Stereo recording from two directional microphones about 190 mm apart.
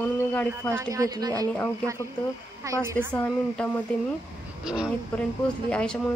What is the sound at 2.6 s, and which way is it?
Speech, 15° right (ahead or behind).